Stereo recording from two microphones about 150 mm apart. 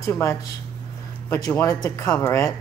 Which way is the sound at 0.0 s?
20° left (ahead or behind).